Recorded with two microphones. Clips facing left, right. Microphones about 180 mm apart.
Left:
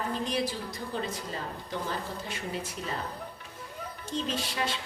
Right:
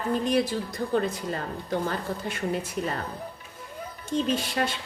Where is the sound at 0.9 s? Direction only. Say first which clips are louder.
Right 8 dB; 55° right (ahead or behind).